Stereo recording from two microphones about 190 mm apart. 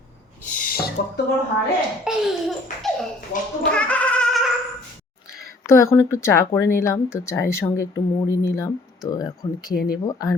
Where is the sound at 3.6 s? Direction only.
5° left (ahead or behind).